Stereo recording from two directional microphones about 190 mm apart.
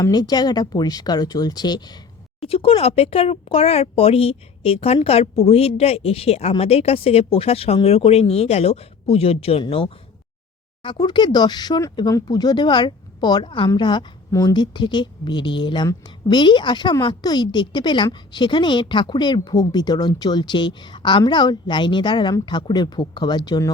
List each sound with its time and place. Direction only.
0.0 s speech: 20° left (ahead or behind)